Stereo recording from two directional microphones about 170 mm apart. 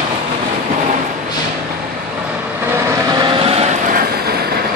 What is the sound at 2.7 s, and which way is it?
Vehicle, 15° right (ahead or behind).